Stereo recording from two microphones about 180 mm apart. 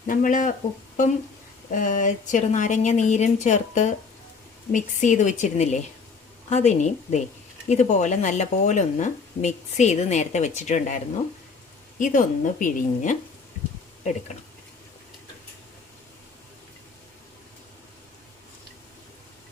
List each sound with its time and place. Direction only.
0.1 s a woman's voice: 45° left (ahead or behind)
1.7 s a woman's voice: 45° left (ahead or behind)